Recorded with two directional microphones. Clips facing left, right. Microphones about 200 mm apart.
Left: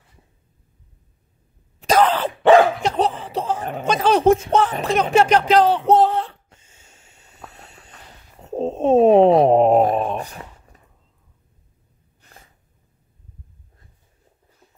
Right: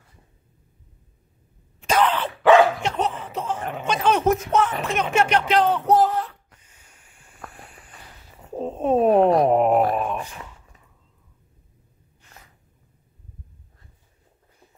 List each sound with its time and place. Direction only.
1.8 s speech: 35° left (ahead or behind)
5.9 s a sound: 25° left (ahead or behind)
12.2 s gasp: 35° left (ahead or behind)